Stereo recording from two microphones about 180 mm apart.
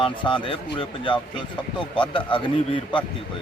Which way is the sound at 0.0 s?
25° left (ahead or behind).